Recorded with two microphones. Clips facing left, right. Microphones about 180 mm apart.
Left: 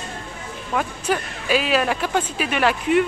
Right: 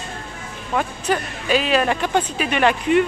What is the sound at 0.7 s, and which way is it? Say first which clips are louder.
Speech: right 1 dB; 5° left (ahead or behind).